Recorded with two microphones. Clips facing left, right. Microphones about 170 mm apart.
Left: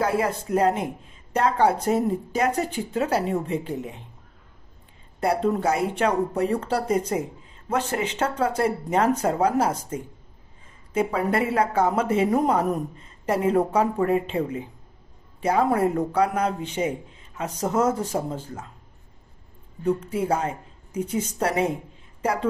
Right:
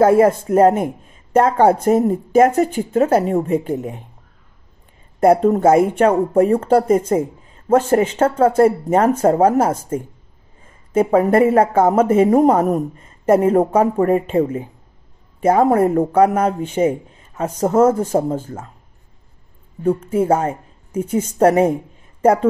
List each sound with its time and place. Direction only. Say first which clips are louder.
0.0 s speech: right 12 dB; 50° right (ahead or behind)
5.2 s speech: right 10 dB; 45° right (ahead or behind)
19.8 s a woman's voice: right 7 dB; 50° right (ahead or behind)